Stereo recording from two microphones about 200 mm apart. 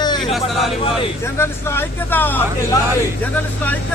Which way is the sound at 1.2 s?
10° left (ahead or behind).